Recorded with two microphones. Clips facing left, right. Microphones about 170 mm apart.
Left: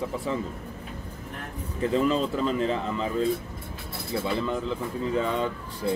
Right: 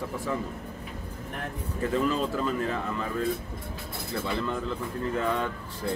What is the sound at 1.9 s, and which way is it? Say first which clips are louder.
Speech: left 3 dB; 20° left (ahead or behind).